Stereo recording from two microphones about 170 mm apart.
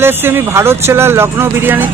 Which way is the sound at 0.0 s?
15° right (ahead or behind).